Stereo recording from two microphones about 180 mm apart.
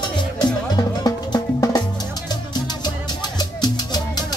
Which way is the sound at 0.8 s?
20° left (ahead or behind).